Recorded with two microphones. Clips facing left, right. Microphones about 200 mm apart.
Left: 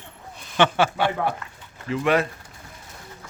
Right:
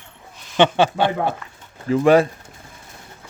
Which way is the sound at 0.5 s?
20° right (ahead or behind).